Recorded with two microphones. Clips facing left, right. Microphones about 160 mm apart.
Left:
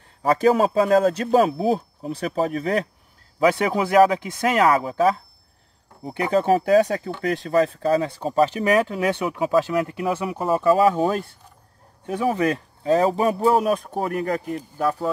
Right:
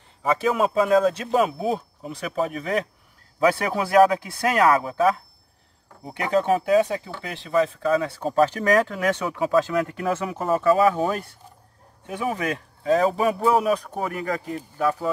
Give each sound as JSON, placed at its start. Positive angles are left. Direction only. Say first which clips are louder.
{"t": 0.4, "sound": "speech", "louder": "left 4 dB", "side_deg": 35}
{"t": 3.4, "sound": "speech", "louder": "left 2 dB", "side_deg": 20}
{"t": 6.3, "sound": "speech", "louder": "left 2 dB", "side_deg": 35}
{"t": 8.2, "sound": "speech", "louder": "even", "side_deg": 0}
{"t": 8.5, "sound": "speech", "louder": "left 1 dB", "side_deg": 15}
{"t": 11.0, "sound": "speech", "louder": "left 3 dB", "side_deg": 30}
{"t": 14.5, "sound": "speech", "louder": "left 1 dB", "side_deg": 0}